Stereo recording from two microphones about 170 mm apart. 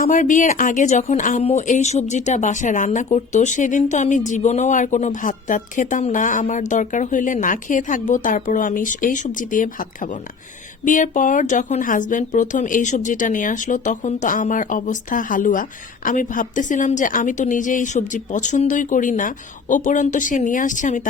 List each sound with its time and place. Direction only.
0.0 s speech: 50° left (ahead or behind)